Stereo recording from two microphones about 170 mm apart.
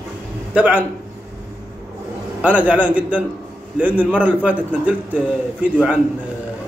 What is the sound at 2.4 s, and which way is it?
A man's voice, 10° right (ahead or behind).